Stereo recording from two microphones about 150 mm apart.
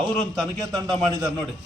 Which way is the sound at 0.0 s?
Centre (ahead or behind).